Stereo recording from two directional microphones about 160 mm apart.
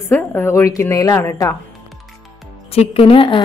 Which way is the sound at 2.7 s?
40° left (ahead or behind).